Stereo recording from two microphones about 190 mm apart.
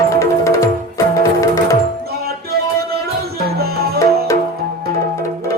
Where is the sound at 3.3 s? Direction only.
55° right (ahead or behind).